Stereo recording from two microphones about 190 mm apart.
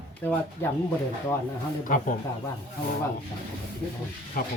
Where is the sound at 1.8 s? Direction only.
45° left (ahead or behind).